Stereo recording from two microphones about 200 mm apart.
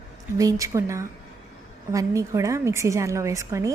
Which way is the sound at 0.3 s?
15° right (ahead or behind).